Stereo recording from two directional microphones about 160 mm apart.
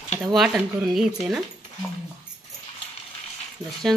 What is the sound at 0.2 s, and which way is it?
Speech, centre (ahead or behind).